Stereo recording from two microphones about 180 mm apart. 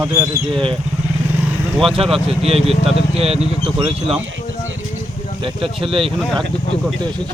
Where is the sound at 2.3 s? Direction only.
35° right (ahead or behind).